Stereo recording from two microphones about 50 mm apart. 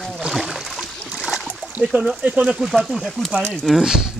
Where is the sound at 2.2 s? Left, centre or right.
Right.